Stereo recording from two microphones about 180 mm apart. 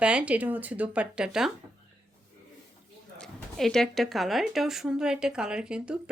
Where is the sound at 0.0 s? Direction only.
5° right (ahead or behind).